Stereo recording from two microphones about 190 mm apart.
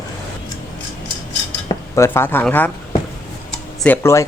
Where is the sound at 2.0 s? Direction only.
10° left (ahead or behind).